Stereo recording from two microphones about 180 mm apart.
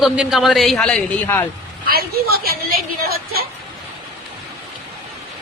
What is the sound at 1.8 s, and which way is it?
A woman's voice, 55° right (ahead or behind).